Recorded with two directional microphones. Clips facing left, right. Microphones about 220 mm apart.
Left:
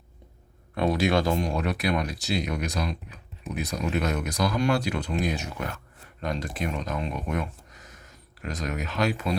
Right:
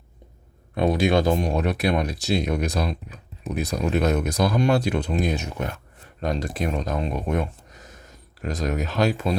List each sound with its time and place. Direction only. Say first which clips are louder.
0.8 s speech: right 3 dB; 15° right (ahead or behind)
4.0 s speech: right 6 dB; 40° right (ahead or behind)
4.3 s speech: right 4 dB; 25° right (ahead or behind)
6.1 s speech: right 4 dB; 35° right (ahead or behind)